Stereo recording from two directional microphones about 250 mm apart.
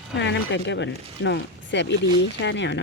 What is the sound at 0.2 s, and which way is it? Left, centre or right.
Speech, left.